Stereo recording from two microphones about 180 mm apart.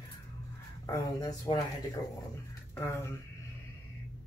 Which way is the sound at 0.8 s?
20° left (ahead or behind).